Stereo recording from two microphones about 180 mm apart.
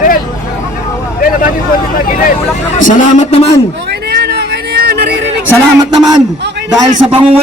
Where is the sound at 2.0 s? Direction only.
50° left (ahead or behind).